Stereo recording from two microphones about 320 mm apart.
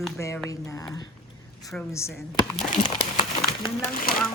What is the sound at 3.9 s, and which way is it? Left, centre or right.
Speech, left.